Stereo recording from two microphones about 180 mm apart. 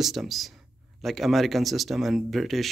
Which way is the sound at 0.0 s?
Centre (ahead or behind).